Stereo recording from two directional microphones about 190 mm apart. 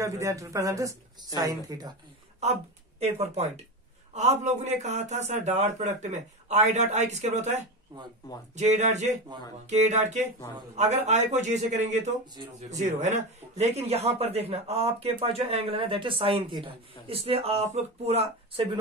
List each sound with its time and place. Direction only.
0.0 s speech: 15° right (ahead or behind)
2.4 s a man's voice: 35° right (ahead or behind)
7.9 s speech: 20° right (ahead or behind)
8.5 s a man's voice: 35° right (ahead or behind)